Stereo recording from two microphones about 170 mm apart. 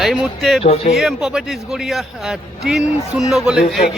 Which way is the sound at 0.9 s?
Centre (ahead or behind).